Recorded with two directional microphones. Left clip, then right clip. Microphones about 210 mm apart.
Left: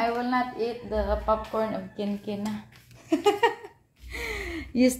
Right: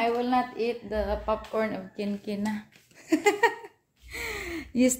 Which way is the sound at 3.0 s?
15° right (ahead or behind).